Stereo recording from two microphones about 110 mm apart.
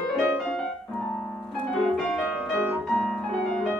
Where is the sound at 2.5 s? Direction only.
15° right (ahead or behind).